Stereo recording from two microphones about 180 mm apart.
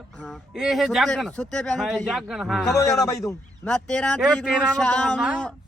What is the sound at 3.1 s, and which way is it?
Speech, 15° left (ahead or behind).